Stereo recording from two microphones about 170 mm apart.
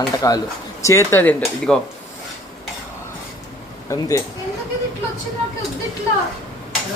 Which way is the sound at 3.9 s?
20° left (ahead or behind).